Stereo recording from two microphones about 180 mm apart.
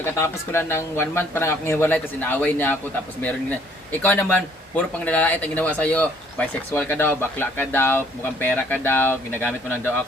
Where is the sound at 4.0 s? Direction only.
10° left (ahead or behind).